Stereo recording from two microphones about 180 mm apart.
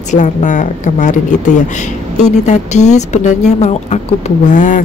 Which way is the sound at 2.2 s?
40° left (ahead or behind).